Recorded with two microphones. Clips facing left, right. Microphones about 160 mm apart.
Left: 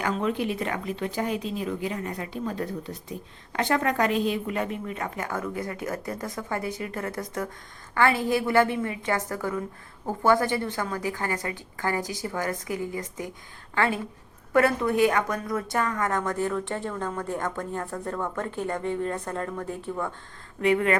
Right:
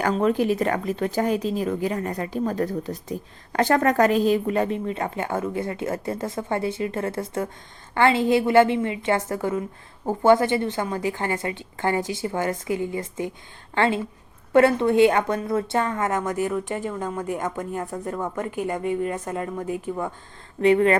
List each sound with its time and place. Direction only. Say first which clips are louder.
0.0 s a woman's voice: right 6 dB; 45° right (ahead or behind); by 20.1 s 15° right (ahead or behind)
20.6 s speech: right 5 dB; 30° right (ahead or behind)